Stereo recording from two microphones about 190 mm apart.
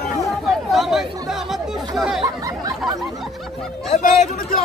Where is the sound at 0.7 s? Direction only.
Centre (ahead or behind).